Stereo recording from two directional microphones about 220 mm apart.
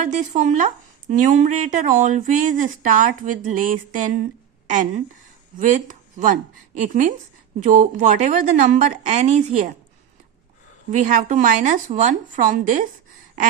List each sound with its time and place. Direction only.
0.1 s a woman's voice: 35° right (ahead or behind)
10.9 s speech: 35° right (ahead or behind)